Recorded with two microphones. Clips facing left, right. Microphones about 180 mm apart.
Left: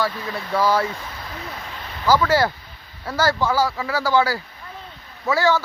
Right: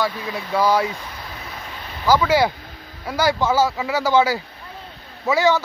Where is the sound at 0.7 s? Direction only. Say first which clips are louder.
Right 2 dB; 15° right (ahead or behind).